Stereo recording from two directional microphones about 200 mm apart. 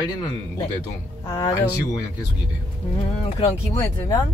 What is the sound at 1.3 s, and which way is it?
Speech, 15° left (ahead or behind).